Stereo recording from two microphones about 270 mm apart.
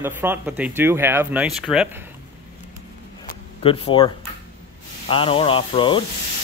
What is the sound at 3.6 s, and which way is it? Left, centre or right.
Speech, left.